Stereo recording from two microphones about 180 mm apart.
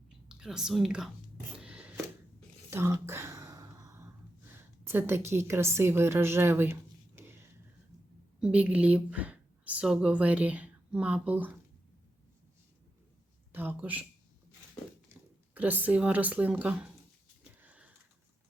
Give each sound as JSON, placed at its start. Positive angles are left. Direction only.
{"t": 0.3, "sound": "speech", "side_deg": -5}
{"t": 1.5, "sound": "a sound", "side_deg": -5}
{"t": 4.4, "sound": "a woman's voice", "side_deg": -10}
{"t": 7.2, "sound": "whispering", "side_deg": -15}
{"t": 8.4, "sound": "speech", "side_deg": -5}
{"t": 13.5, "sound": "speech", "side_deg": -10}
{"t": 15.5, "sound": "speech", "side_deg": -10}
{"t": 17.6, "sound": "sniff", "side_deg": -5}